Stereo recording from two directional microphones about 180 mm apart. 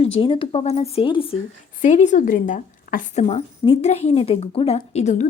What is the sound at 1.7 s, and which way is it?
A woman's voice, 45° left (ahead or behind).